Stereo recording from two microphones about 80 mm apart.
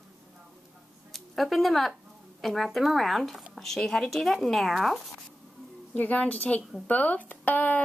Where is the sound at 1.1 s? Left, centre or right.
Centre.